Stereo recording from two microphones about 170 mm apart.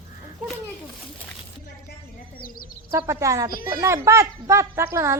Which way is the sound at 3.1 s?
20° right (ahead or behind).